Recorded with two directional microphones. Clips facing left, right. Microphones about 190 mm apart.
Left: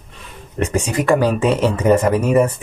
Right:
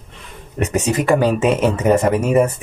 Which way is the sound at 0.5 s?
20° right (ahead or behind).